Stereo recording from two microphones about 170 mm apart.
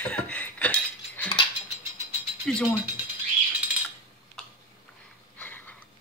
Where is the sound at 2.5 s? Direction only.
5° left (ahead or behind).